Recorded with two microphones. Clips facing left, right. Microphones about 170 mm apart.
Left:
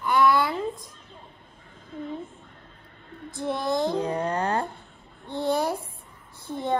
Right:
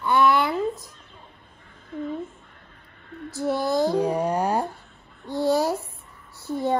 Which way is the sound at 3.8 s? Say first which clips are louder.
Right 4 dB; 10° right (ahead or behind).